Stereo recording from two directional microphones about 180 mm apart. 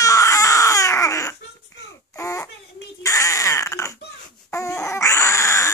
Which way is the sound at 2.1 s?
15° left (ahead or behind).